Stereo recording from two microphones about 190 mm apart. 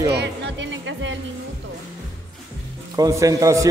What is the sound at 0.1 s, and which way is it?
Speech, 65° right (ahead or behind).